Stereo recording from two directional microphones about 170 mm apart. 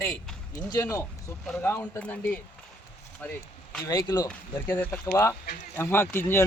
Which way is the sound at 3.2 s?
5° left (ahead or behind).